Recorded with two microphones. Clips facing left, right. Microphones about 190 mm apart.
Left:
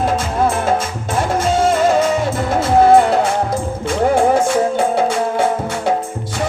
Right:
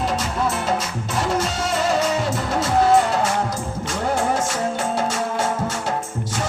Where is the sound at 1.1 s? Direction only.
50° left (ahead or behind).